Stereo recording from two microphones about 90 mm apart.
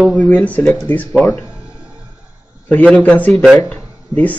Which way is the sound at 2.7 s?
15° left (ahead or behind).